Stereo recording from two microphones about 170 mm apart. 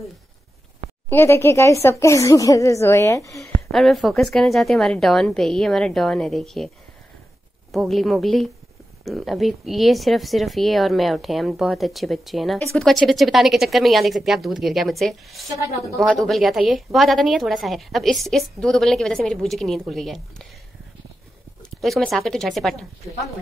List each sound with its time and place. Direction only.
1.0 s speech: 15° left (ahead or behind)
3.3 s a woman's voice: centre (ahead or behind)
7.7 s a woman's voice: centre (ahead or behind)
21.6 s a woman's voice: centre (ahead or behind)